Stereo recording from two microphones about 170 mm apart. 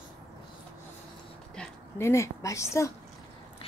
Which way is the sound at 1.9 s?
15° left (ahead or behind).